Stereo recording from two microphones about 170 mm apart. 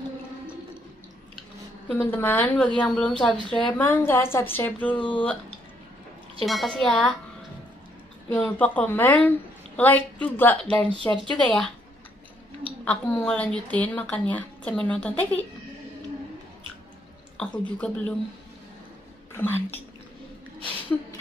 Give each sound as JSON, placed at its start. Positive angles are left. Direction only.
{"t": 1.9, "sound": "a woman's voice", "side_deg": 10}
{"t": 4.9, "sound": "speech", "side_deg": 30}
{"t": 6.4, "sound": "a woman's voice", "side_deg": 0}
{"t": 8.3, "sound": "a woman's voice", "side_deg": 10}
{"t": 12.8, "sound": "a woman's voice", "side_deg": 5}
{"t": 17.4, "sound": "a woman's voice", "side_deg": 5}
{"t": 19.3, "sound": "a woman's voice", "side_deg": 10}